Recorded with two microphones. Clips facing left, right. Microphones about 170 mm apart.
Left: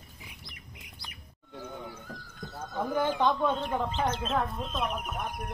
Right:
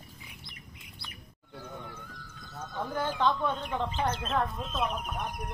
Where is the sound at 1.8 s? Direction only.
40° left (ahead or behind).